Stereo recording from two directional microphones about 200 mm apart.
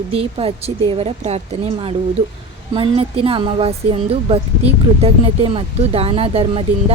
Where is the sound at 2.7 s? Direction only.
25° right (ahead or behind).